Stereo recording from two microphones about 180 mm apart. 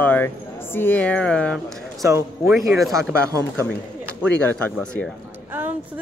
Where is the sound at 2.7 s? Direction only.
Centre (ahead or behind).